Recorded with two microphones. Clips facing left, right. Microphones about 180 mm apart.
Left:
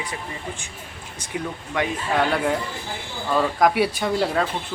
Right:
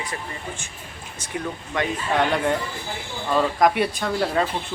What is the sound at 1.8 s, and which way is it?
Speech, 10° left (ahead or behind).